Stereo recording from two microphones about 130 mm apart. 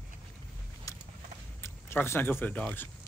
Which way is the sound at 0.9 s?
25° left (ahead or behind).